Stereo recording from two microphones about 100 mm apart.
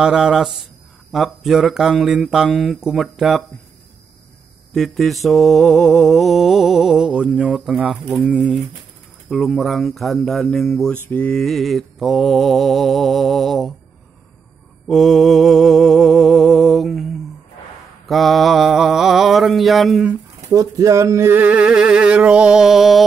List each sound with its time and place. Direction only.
0.0 s mantra: 5° right (ahead or behind)
4.7 s mantra: centre (ahead or behind)
8.3 s a sound: 10° right (ahead or behind)
9.3 s mantra: centre (ahead or behind)
11.1 s mantra: 15° left (ahead or behind)
11.3 s mantra: centre (ahead or behind)
14.9 s mantra: centre (ahead or behind)
20.3 s a sound: 35° right (ahead or behind); by 23.0 s 5° right (ahead or behind)